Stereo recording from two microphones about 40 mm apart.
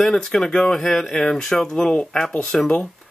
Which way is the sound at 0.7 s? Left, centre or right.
Centre.